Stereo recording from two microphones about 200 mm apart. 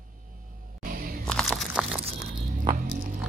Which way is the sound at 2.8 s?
45° right (ahead or behind).